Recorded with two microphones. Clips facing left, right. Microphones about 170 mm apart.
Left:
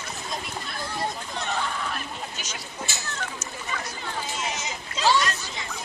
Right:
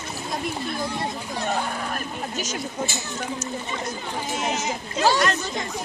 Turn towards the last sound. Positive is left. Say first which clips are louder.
# right 3 dB
turn(degrees=-45)  # may be behind; listen again after turning